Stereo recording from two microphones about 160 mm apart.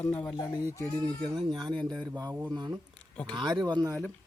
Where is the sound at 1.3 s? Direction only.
25° right (ahead or behind).